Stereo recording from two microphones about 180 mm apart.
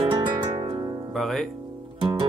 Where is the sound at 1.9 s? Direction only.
25° right (ahead or behind).